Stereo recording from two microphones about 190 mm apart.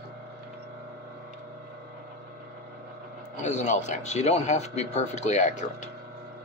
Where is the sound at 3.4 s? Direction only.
40° left (ahead or behind).